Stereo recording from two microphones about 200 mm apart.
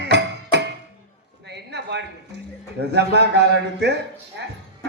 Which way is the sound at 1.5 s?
55° right (ahead or behind).